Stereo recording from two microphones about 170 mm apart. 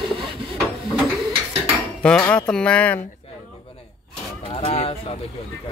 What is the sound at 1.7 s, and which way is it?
Cutlery, 5° left (ahead or behind).